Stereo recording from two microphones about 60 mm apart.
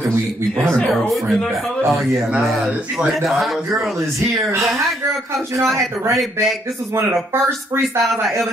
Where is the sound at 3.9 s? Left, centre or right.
Right.